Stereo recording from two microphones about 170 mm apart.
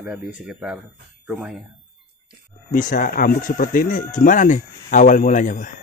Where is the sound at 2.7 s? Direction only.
50° left (ahead or behind).